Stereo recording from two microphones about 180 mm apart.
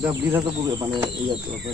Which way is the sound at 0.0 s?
10° right (ahead or behind).